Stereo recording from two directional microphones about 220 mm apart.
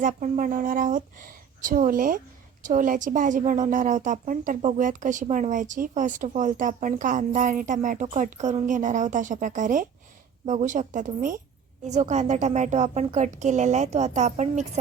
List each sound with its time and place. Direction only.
0.0 s a woman's voice: 35° right (ahead or behind)